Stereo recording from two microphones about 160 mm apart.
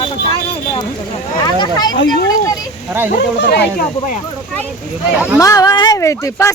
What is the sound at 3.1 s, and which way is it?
Speech, 90° left.